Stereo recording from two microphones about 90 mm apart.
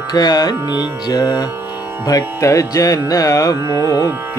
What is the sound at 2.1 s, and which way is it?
Music, 40° left (ahead or behind).